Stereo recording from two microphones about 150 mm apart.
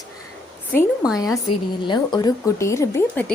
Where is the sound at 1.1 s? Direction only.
25° left (ahead or behind).